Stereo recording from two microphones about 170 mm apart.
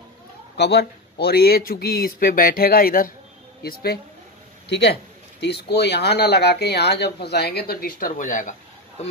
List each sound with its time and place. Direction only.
0.6 s speech: 80° left
4.6 s a man's voice: 90° left
5.4 s speech: 80° left; by 8.5 s 50° left (ahead or behind)